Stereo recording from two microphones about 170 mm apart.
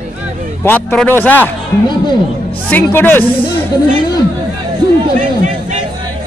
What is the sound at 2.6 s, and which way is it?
Speech, 10° left (ahead or behind).